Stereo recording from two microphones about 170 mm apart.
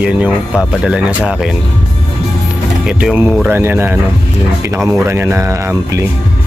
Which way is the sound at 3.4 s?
15° right (ahead or behind).